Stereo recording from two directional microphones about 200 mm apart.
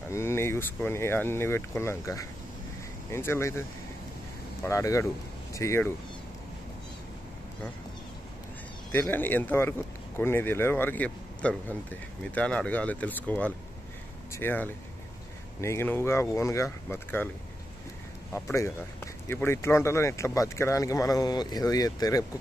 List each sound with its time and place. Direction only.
0.1 s speech: 15° left (ahead or behind)
4.6 s speech: 15° left (ahead or behind)
8.9 s speech: 10° left (ahead or behind)
18.3 s speech: 15° left (ahead or behind)